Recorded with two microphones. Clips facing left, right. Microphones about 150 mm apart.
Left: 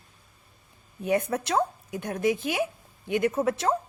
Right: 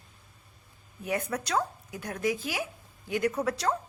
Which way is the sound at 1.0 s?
25° left (ahead or behind).